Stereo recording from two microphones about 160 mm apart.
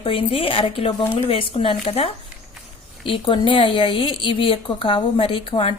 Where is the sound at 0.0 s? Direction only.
35° left (ahead or behind).